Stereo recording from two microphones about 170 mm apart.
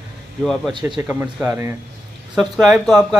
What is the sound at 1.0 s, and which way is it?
A man's voice, 10° right (ahead or behind).